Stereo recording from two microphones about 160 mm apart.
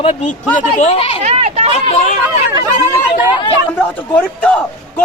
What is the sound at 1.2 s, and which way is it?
Speech, 45° right (ahead or behind).